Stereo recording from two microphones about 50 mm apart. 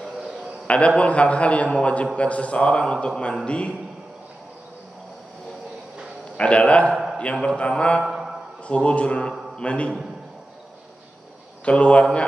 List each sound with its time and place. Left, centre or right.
0.7 s a man's voice: left
6.3 s a man's voice: left
8.0 s a sound: centre
8.6 s a man's voice: left
11.6 s a man's voice: left